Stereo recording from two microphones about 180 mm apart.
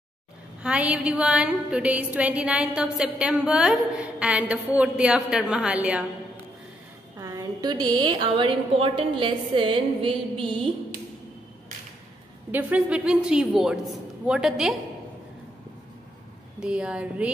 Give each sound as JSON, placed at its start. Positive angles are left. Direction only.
{"t": 0.6, "sound": "a woman's voice", "side_deg": -5}
{"t": 7.2, "sound": "a woman's voice", "side_deg": -20}
{"t": 12.4, "sound": "a woman's voice", "side_deg": -10}
{"t": 16.5, "sound": "a woman's voice", "side_deg": -5}